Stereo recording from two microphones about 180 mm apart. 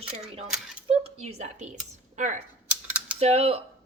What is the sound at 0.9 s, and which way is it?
A woman's voice, 35° right (ahead or behind).